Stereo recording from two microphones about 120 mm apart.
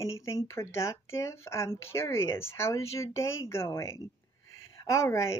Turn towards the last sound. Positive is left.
turn(degrees=25)  # may be behind; listen again after turning